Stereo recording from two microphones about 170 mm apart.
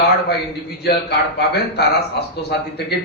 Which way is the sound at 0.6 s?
70° left (ahead or behind).